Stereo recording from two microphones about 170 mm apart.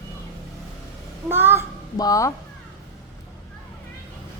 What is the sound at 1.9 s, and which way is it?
Speech, 20° left (ahead or behind).